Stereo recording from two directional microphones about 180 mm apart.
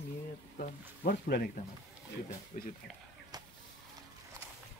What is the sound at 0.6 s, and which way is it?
Speech, 55° left (ahead or behind).